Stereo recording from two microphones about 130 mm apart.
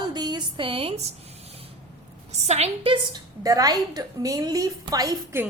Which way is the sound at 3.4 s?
30° right (ahead or behind).